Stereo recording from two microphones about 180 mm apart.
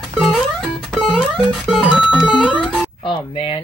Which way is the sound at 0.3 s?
Centre (ahead or behind).